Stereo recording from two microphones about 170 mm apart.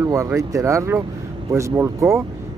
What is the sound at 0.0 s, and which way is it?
Speech, 15° right (ahead or behind).